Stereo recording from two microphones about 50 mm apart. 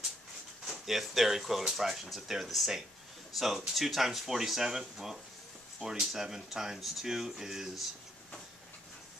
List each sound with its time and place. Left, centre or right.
0.7 s speech: centre